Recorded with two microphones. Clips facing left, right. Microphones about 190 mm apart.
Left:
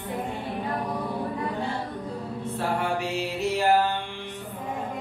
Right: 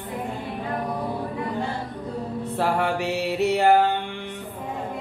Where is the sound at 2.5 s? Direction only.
70° right (ahead or behind).